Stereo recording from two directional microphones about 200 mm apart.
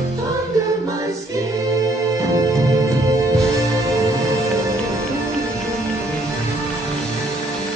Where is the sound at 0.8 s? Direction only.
15° right (ahead or behind).